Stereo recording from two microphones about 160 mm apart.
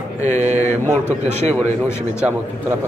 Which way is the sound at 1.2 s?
45° right (ahead or behind).